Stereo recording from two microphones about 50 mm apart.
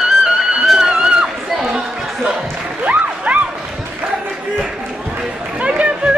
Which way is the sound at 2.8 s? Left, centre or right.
Right.